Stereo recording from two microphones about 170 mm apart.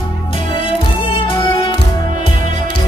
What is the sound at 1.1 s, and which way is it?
Music, 30° left (ahead or behind).